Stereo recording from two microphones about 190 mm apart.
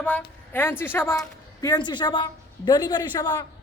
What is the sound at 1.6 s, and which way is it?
A woman's voice, 25° left (ahead or behind).